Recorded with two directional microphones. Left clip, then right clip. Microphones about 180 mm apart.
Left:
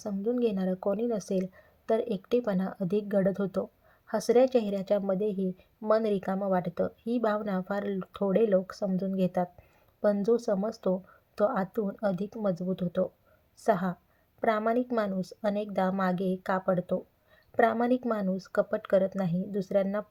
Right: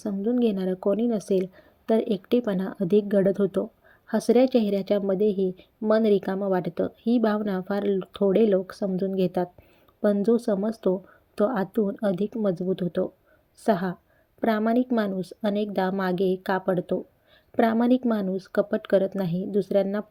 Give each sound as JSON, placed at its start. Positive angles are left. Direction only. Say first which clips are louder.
{"t": 0.0, "sound": "speech", "louder": "right 4 dB", "side_deg": -20}